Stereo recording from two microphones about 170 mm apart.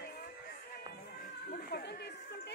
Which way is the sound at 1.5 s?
70° left (ahead or behind).